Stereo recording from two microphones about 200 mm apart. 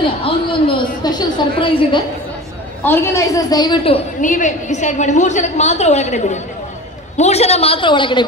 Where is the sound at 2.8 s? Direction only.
10° left (ahead or behind).